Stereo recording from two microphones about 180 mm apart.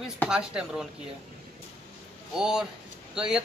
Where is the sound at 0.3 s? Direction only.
5° right (ahead or behind).